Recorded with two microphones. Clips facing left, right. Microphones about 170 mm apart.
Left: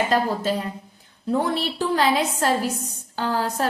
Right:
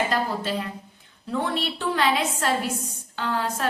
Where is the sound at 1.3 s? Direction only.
40° left (ahead or behind).